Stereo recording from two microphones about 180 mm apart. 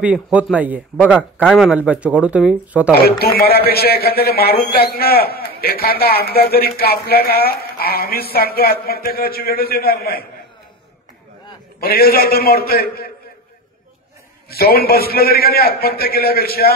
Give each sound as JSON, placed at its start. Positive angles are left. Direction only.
{"t": 0.0, "sound": "speech", "side_deg": -5}
{"t": 3.1, "sound": "a man's voice", "side_deg": 60}
{"t": 11.8, "sound": "a man's voice", "side_deg": 55}
{"t": 14.5, "sound": "a man's voice", "side_deg": 55}